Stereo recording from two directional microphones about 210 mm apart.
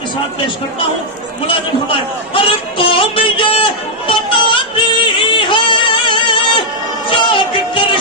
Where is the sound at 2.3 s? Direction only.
25° left (ahead or behind).